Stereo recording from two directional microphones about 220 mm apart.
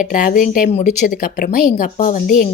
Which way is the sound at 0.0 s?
35° left (ahead or behind).